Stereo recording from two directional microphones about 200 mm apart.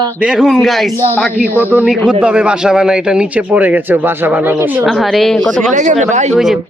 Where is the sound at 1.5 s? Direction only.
10° left (ahead or behind).